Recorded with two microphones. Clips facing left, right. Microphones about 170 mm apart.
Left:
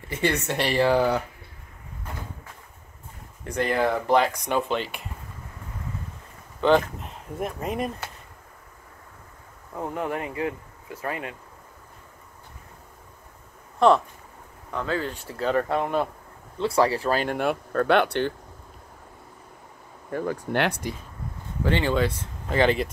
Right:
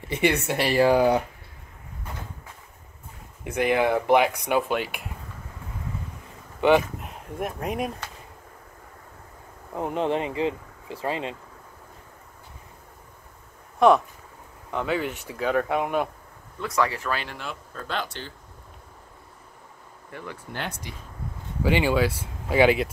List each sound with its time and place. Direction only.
0.1 s speech: 10° right (ahead or behind)
3.4 s speech: 10° right (ahead or behind)
7.0 s speech: centre (ahead or behind)
9.8 s speech: 20° right (ahead or behind)
13.7 s speech: 15° right (ahead or behind)
16.5 s speech: 30° left (ahead or behind); by 18.3 s 65° left (ahead or behind)
20.1 s speech: 45° left (ahead or behind)
20.5 s speech: 70° left (ahead or behind)
21.6 s speech: 10° right (ahead or behind)